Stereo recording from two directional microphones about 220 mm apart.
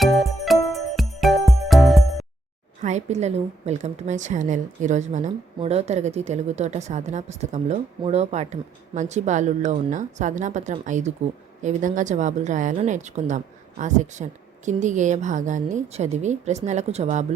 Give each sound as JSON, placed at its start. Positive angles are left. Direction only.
{"t": 0.0, "sound": "music", "side_deg": 0}
{"t": 2.8, "sound": "a woman's voice", "side_deg": -30}